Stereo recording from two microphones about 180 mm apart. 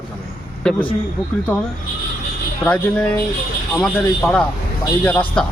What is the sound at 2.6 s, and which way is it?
Speech, 5° left (ahead or behind).